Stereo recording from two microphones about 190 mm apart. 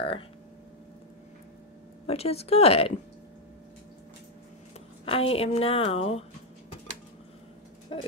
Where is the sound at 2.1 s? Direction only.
30° left (ahead or behind).